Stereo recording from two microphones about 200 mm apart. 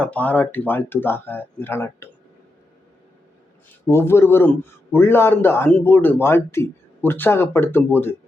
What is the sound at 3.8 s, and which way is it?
A man's voice, 10° left (ahead or behind).